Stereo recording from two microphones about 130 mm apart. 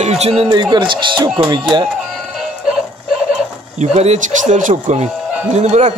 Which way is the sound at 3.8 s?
60° right (ahead or behind).